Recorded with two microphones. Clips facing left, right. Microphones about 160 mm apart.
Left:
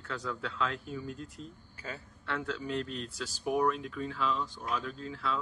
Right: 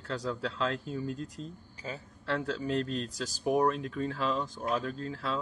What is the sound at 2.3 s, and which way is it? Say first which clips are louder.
Speech: right 4 dB; 35° right (ahead or behind).